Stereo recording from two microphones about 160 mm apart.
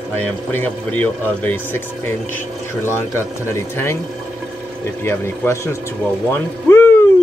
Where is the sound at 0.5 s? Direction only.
10° left (ahead or behind).